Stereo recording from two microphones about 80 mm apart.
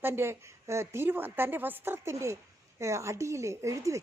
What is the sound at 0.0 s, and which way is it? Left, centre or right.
A woman's voice, right.